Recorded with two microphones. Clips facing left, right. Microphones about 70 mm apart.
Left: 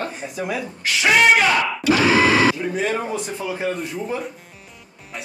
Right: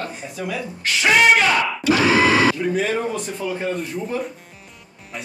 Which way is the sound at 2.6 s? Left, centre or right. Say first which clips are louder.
Right 2 dB; centre.